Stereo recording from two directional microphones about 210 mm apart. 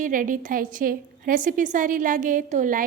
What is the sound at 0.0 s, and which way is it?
A woman's voice, 40° right (ahead or behind).